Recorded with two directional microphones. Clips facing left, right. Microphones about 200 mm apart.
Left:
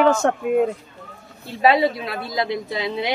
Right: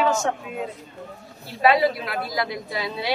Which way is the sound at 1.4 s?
25° left (ahead or behind).